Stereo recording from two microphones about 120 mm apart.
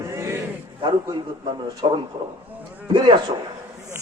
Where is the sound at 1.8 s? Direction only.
40° right (ahead or behind).